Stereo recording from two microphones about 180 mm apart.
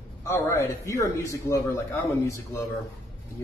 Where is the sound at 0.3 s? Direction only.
15° left (ahead or behind).